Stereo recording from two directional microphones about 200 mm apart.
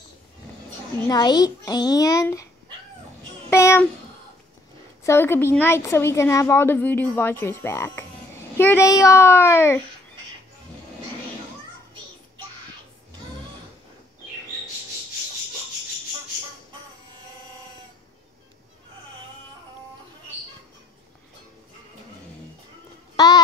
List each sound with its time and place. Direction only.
1.0 s a woman's voice: 20° left (ahead or behind)
3.4 s a child's voice: 15° left (ahead or behind)
5.0 s a woman's voice: 10° left (ahead or behind)
23.1 s a sound: 20° left (ahead or behind)